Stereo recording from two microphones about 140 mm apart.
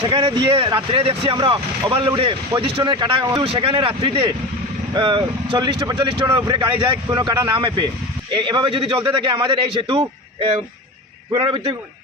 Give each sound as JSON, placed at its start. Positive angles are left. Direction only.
{"t": 0.1, "sound": "a man's voice", "side_deg": -35}